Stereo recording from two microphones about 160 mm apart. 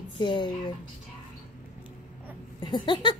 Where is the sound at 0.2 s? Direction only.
30° left (ahead or behind).